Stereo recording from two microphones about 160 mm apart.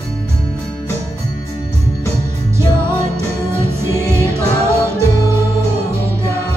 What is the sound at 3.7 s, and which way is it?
Music, 15° right (ahead or behind).